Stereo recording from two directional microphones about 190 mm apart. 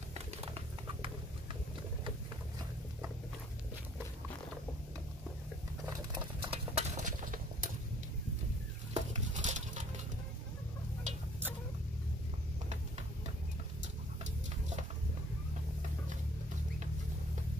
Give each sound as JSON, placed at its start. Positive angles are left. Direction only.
{"t": 0.1, "sound": "a sound", "side_deg": -30}
{"t": 6.4, "sound": "horse", "side_deg": -30}
{"t": 8.9, "sound": "dishes", "side_deg": -40}